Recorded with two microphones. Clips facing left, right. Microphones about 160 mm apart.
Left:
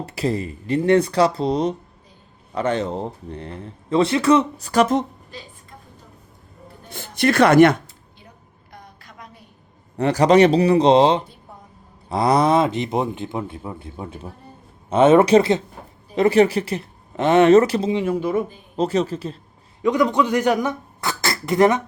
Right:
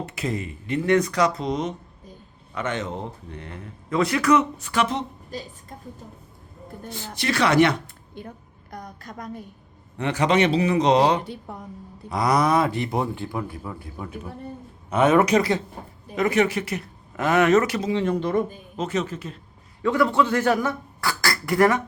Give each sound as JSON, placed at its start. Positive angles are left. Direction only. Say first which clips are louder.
{"t": 0.0, "sound": "speech", "louder": "left 5 dB", "side_deg": 35}
{"t": 5.3, "sound": "a woman's voice", "louder": "right 5 dB", "side_deg": -40}
{"t": 7.2, "sound": "speech", "louder": "left 6 dB", "side_deg": 50}
{"t": 8.7, "sound": "a sound", "louder": "right 7 dB", "side_deg": -45}
{"t": 10.0, "sound": "speech", "louder": "left 7 dB", "side_deg": 40}
{"t": 11.5, "sound": "a sound", "louder": "right 6 dB", "side_deg": -70}
{"t": 12.0, "sound": "a man's voice", "louder": "left 4 dB", "side_deg": 30}
{"t": 17.9, "sound": "speech", "louder": "left 2 dB", "side_deg": 10}
{"t": 18.8, "sound": "speech", "louder": "left 6 dB", "side_deg": 35}
{"t": 19.8, "sound": "speech", "louder": "left 2 dB", "side_deg": 15}